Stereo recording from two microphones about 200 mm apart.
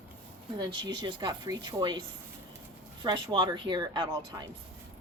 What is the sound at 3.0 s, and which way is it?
Speech, 25° right (ahead or behind).